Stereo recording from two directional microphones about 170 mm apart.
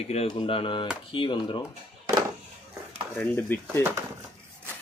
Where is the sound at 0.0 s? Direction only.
35° left (ahead or behind).